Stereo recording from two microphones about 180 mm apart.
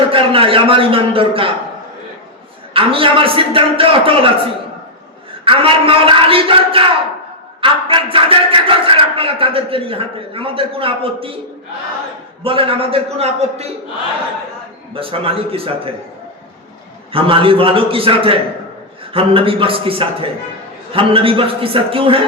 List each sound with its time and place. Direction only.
0.0 s a man's voice: 30° right (ahead or behind)
2.7 s a man's voice: 30° right (ahead or behind)
5.5 s a man's voice: 30° right (ahead or behind)
12.4 s a man's voice: 30° right (ahead or behind)
14.9 s a man's voice: 30° right (ahead or behind)
17.1 s a man's voice: 30° right (ahead or behind)